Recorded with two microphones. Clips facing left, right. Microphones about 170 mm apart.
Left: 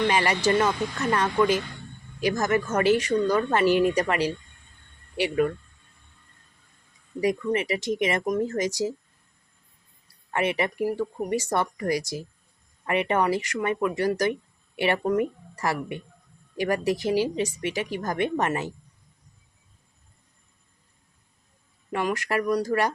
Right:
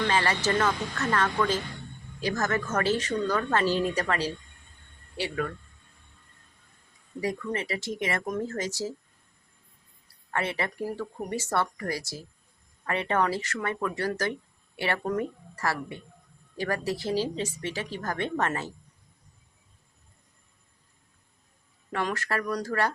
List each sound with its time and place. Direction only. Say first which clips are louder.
0.1 s speech: left 3 dB; 15° left (ahead or behind)
7.2 s speech: left 6 dB; 15° left (ahead or behind)
10.3 s speech: left 5 dB; 15° left (ahead or behind)
21.9 s speech: left 4 dB; 15° left (ahead or behind)